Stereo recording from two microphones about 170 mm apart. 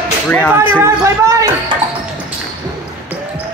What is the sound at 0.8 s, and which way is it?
Speech, 20° right (ahead or behind).